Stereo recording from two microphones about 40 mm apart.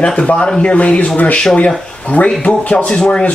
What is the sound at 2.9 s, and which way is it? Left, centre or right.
Speech, left.